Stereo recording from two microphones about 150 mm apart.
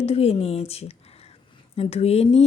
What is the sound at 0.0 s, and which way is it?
Speech, 40° left (ahead or behind).